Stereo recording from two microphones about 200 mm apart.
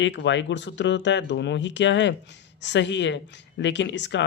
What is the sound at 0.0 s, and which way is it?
Speech, 65° left (ahead or behind).